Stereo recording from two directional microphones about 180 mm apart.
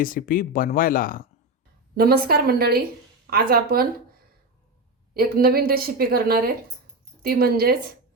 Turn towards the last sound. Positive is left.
turn(degrees=-55)  # may be behind; listen again after turning